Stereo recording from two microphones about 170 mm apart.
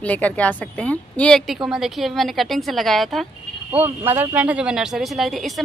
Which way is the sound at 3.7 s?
15° right (ahead or behind).